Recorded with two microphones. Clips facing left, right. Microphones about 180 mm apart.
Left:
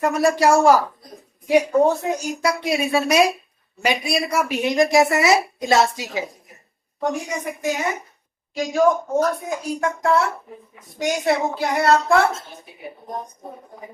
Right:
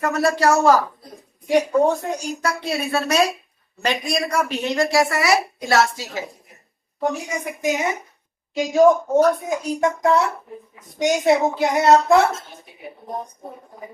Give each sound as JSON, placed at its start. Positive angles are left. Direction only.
{"t": 0.0, "sound": "speech", "side_deg": 10}
{"t": 7.4, "sound": "a woman's voice", "side_deg": -15}